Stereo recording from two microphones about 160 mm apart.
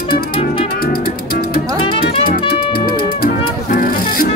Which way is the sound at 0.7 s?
70° left (ahead or behind).